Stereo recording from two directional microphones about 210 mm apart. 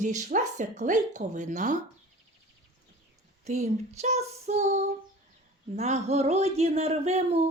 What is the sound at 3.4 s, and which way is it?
Speech, 30° right (ahead or behind).